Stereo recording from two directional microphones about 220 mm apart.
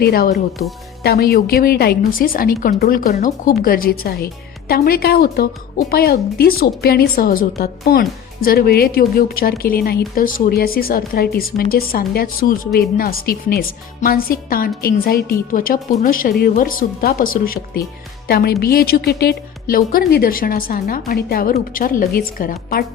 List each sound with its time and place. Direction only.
0.0 s speech: 45° left (ahead or behind)